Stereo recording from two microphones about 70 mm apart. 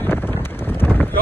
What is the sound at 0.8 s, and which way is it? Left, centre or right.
Wind noise, left.